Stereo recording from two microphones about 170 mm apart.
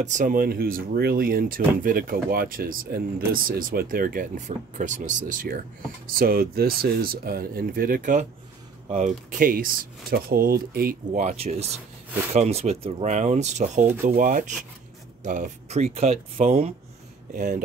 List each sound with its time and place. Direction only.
0.0 s speech: 50° right (ahead or behind)
11.1 s speech: 40° right (ahead or behind)
17.3 s speech: 50° right (ahead or behind)